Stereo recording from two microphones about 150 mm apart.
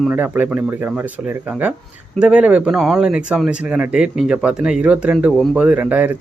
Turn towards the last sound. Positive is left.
turn(degrees=-10)  # may be behind; listen again after turning